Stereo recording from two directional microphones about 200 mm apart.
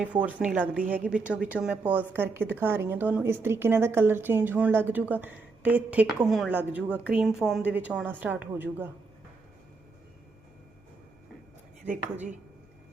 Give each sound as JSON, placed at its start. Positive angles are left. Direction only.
{"t": 0.0, "sound": "a woman's voice", "side_deg": -5}
{"t": 11.9, "sound": "speech", "side_deg": -35}